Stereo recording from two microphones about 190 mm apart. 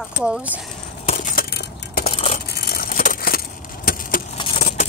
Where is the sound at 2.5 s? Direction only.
55° left (ahead or behind).